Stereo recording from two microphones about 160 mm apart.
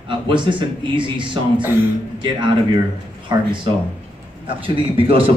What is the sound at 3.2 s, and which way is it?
A man's voice, 30° right (ahead or behind).